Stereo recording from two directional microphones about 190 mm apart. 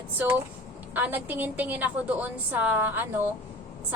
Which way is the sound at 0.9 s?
10° right (ahead or behind).